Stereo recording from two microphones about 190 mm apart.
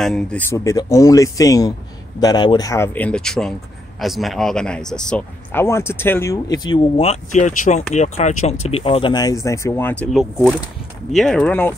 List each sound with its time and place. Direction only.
0.0 s speech: 5° left (ahead or behind)
10.1 s speech: 5° right (ahead or behind)